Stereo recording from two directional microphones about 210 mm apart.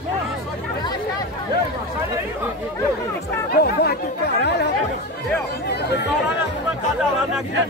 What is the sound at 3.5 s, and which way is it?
Chatter, 50° left (ahead or behind).